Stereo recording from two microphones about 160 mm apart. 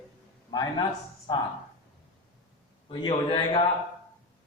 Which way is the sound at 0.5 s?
25° left (ahead or behind).